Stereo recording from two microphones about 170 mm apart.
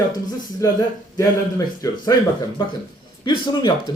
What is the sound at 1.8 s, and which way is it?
Speech, 20° left (ahead or behind).